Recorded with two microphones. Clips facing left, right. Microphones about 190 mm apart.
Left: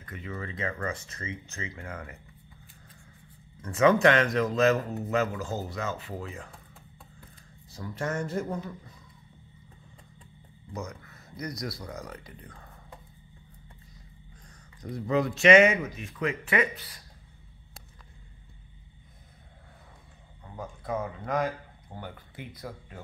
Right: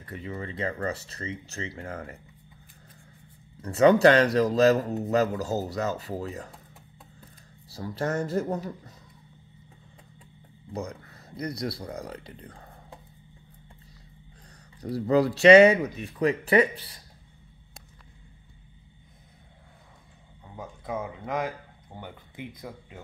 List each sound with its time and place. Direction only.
0.0 s speech: 35° right (ahead or behind)
3.6 s speech: 35° right (ahead or behind)
7.7 s speech: 35° right (ahead or behind)
10.7 s speech: 30° right (ahead or behind)
14.8 s speech: 35° right (ahead or behind)
20.8 s speech: 10° right (ahead or behind)